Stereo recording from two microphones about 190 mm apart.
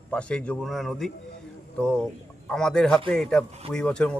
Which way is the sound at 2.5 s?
5° left (ahead or behind).